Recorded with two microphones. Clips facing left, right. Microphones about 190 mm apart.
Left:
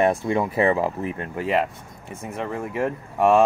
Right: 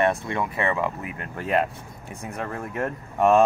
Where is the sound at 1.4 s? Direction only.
5° left (ahead or behind).